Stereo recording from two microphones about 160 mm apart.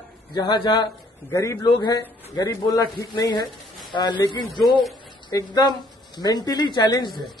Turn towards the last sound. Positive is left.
turn(degrees=25)  # may be behind; listen again after turning